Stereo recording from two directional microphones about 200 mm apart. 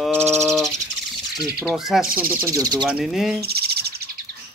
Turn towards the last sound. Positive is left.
turn(degrees=-55)  # may be behind; listen again after turning